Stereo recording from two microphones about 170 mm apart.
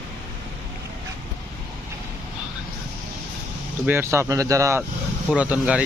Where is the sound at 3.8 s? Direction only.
15° right (ahead or behind).